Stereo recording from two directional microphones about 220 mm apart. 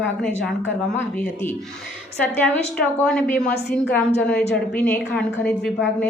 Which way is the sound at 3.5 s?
45° left (ahead or behind).